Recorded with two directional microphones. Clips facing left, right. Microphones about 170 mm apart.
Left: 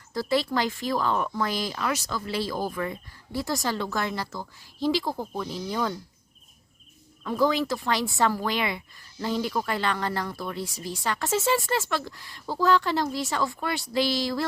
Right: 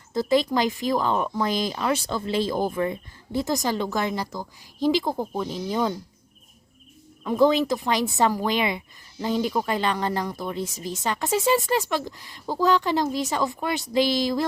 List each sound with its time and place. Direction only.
0.1 s a woman's voice: 20° right (ahead or behind)
7.3 s a woman's voice: 20° right (ahead or behind)